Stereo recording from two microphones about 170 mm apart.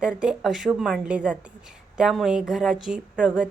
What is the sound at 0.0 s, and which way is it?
A woman's voice, 5° right (ahead or behind).